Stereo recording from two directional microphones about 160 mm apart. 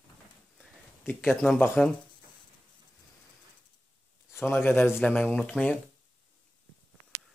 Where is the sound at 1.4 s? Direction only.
5° left (ahead or behind).